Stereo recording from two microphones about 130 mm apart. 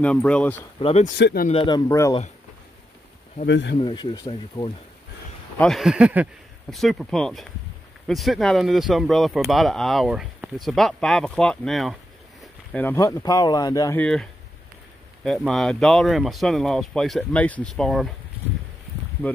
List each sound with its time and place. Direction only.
0.0 s speech: 10° left (ahead or behind)
0.7 s speech: 45° left (ahead or behind)
1.9 s speech: 20° left (ahead or behind)
3.8 s speech: 35° left (ahead or behind)
4.3 s speech: 45° left (ahead or behind)
5.6 s speech: centre (ahead or behind)
12.7 s speech: 15° left (ahead or behind)
13.0 s speech: 30° left (ahead or behind)
13.9 s speech: 5° left (ahead or behind)